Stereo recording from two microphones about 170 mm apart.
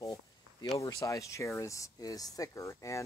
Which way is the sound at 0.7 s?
20° left (ahead or behind).